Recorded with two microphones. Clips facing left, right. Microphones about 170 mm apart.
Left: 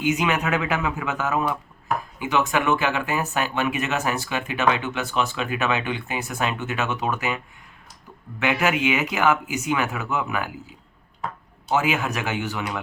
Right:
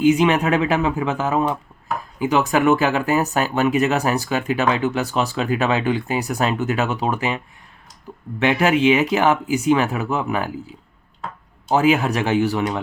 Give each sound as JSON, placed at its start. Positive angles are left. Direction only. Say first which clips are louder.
{"t": 0.0, "sound": "speech", "louder": "right 7 dB", "side_deg": -30}
{"t": 11.7, "sound": "speech", "louder": "right 6 dB", "side_deg": -35}